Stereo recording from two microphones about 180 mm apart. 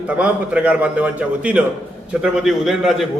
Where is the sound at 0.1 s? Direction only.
5° right (ahead or behind).